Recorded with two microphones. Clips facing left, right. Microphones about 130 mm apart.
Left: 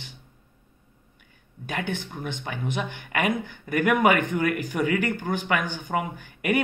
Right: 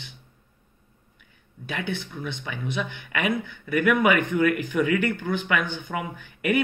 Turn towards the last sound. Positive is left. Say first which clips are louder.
# right 1 dB
turn(degrees=40)  # may be behind; listen again after turning